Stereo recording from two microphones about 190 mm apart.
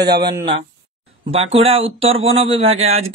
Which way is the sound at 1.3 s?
30° right (ahead or behind).